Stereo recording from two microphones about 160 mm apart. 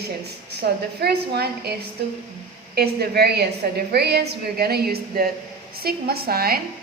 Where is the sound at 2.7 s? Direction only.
80° right.